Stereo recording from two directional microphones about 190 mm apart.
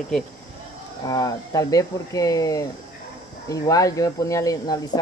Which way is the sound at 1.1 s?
20° left (ahead or behind).